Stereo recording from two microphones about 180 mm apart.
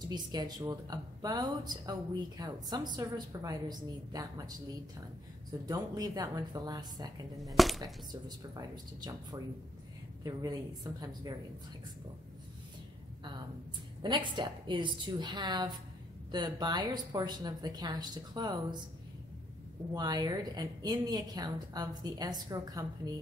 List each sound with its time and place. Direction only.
0.1 s speech: 25° right (ahead or behind)
5.7 s speech: 20° right (ahead or behind)
7.4 s speech: centre (ahead or behind)
7.8 s speech: 20° right (ahead or behind)
14.0 s speech: 25° right (ahead or behind)
19.9 s speech: 25° right (ahead or behind)